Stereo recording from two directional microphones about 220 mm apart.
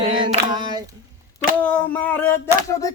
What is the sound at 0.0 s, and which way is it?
Female singing, 25° right (ahead or behind).